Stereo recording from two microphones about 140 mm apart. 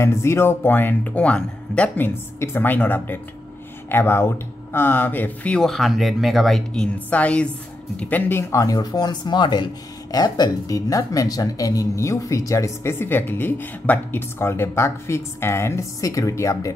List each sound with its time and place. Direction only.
0.0 s speech: 20° left (ahead or behind)